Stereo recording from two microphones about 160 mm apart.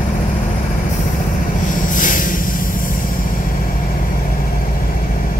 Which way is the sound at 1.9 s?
55° left (ahead or behind).